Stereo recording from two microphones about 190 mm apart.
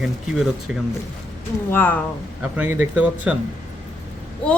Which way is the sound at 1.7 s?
10° left (ahead or behind).